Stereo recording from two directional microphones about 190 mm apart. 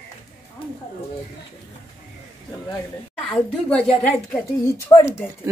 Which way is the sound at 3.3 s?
5° left (ahead or behind).